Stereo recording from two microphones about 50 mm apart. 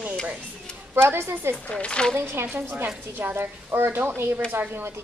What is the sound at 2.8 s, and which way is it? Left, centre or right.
A woman's voice, right.